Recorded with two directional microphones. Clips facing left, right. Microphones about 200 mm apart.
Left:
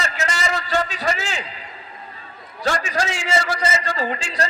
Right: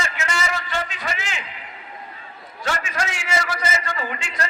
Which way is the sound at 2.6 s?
35° left (ahead or behind).